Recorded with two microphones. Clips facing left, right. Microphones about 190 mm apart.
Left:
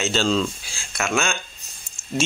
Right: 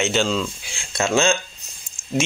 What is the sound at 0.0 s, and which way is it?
Speech, 15° right (ahead or behind).